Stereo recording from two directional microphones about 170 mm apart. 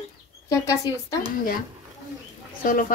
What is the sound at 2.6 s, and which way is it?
Speech, 55° left (ahead or behind).